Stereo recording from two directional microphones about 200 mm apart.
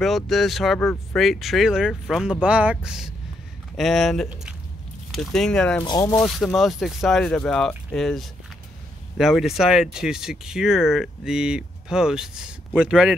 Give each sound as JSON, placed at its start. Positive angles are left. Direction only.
{"t": 0.0, "sound": "speech", "side_deg": 0}
{"t": 5.9, "sound": "speech", "side_deg": 20}
{"t": 6.1, "sound": "speech", "side_deg": 0}